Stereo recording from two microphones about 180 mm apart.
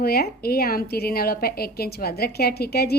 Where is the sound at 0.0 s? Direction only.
60° left (ahead or behind).